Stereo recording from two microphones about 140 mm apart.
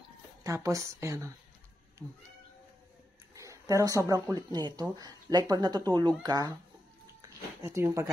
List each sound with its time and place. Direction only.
0.4 s speech: 25° right (ahead or behind)
3.3 s speech: 25° right (ahead or behind)
7.2 s a sound: 20° right (ahead or behind)